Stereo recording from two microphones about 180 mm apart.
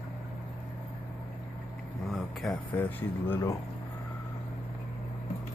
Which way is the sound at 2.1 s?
Centre (ahead or behind).